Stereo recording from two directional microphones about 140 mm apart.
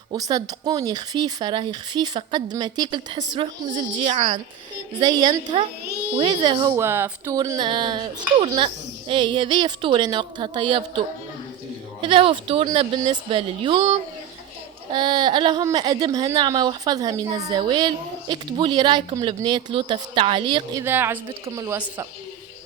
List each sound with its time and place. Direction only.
0.1 s speech: 25° right (ahead or behind)
3.9 s speech: 45° right (ahead or behind)
5.0 s speech: 30° right (ahead or behind)
6.7 s a woman's voice: 20° right (ahead or behind)
7.3 s speech: 30° right (ahead or behind)
12.0 s speech: 35° right (ahead or behind)
14.9 s a woman's voice: 35° right (ahead or behind)
20.8 s a woman's voice: 15° right (ahead or behind)